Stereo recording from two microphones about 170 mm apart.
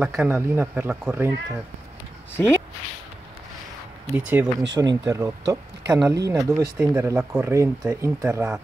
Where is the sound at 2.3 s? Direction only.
15° left (ahead or behind).